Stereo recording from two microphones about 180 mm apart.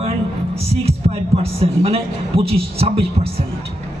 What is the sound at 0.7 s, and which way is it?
Heart sounds, 35° right (ahead or behind).